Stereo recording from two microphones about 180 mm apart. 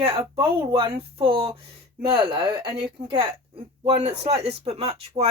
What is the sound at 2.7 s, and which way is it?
Speech, 30° right (ahead or behind).